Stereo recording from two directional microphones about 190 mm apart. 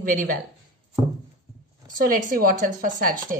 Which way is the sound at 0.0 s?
45° right (ahead or behind).